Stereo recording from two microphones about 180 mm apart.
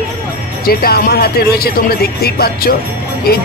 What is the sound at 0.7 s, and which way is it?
Speech, 55° left (ahead or behind).